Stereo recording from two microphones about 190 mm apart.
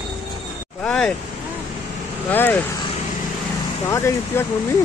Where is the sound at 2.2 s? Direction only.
10° left (ahead or behind).